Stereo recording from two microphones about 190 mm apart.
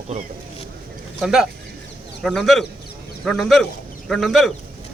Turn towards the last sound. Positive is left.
turn(degrees=0)  # may be behind; listen again after turning